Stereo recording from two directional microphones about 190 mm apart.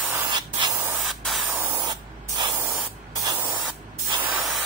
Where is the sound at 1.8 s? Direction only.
25° right (ahead or behind).